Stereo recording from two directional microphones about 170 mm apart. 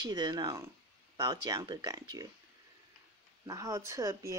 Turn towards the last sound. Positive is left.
turn(degrees=-20)  # may be behind; listen again after turning